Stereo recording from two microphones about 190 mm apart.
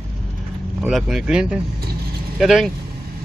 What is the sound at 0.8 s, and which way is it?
Speech, centre (ahead or behind).